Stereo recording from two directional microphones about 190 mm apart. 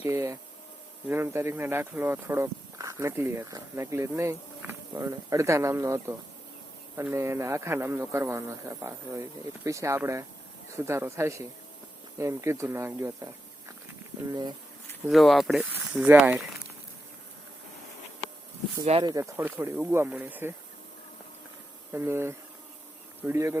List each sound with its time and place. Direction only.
0.0 s speech: 15° right (ahead or behind)
15.0 s speech: centre (ahead or behind)
18.9 s speech: 30° right (ahead or behind)
19.2 s speech: 10° right (ahead or behind)
21.9 s speech: 10° right (ahead or behind)